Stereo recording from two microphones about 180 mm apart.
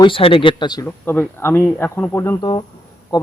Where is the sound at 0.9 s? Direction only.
10° left (ahead or behind).